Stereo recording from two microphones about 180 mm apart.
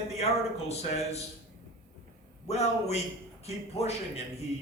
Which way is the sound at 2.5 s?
35° left (ahead or behind).